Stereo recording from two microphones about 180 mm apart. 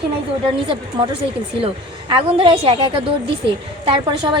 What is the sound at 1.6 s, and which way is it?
A woman's voice, 30° right (ahead or behind).